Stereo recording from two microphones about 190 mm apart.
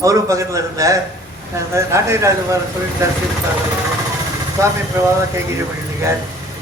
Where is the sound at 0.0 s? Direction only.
15° right (ahead or behind).